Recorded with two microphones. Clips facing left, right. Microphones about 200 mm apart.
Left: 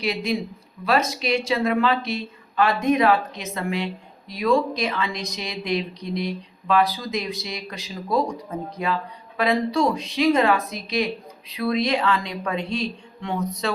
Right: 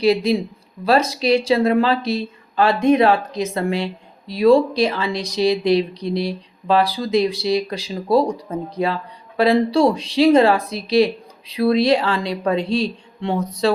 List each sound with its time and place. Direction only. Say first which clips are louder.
0.0 s speech: right 8 dB; 35° right (ahead or behind)